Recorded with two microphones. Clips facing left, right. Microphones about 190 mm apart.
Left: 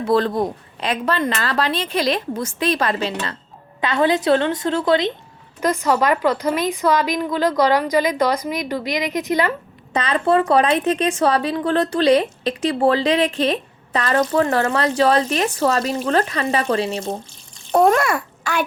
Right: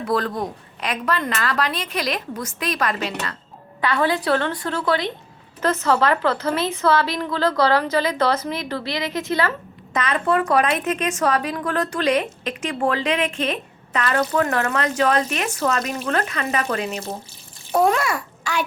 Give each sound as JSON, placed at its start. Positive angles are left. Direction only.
{"t": 0.0, "sound": "a woman's voice", "side_deg": 25}
{"t": 9.9, "sound": "a woman's voice", "side_deg": 30}
{"t": 17.7, "sound": "a child's voice", "side_deg": 50}